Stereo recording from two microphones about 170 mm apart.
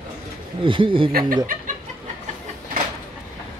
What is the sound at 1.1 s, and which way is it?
Speech, 60° right (ahead or behind).